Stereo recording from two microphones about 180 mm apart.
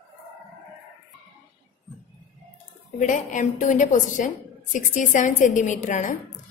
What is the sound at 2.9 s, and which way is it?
A woman's voice, 45° left (ahead or behind).